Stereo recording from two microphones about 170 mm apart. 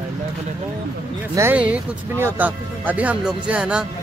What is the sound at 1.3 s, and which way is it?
Speech, 10° right (ahead or behind).